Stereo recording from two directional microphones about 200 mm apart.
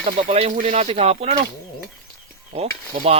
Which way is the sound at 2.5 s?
30° right (ahead or behind).